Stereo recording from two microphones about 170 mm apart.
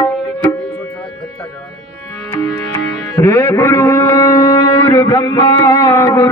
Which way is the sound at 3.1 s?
15° left (ahead or behind).